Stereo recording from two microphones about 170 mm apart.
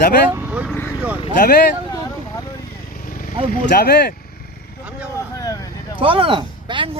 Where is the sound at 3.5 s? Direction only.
55° left (ahead or behind).